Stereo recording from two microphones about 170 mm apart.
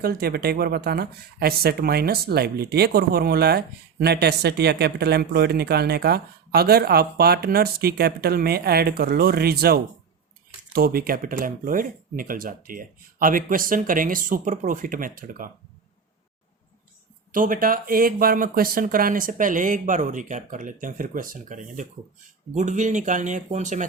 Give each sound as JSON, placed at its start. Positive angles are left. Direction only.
{"t": 0.0, "sound": "speech", "side_deg": -65}
{"t": 17.3, "sound": "speech", "side_deg": -55}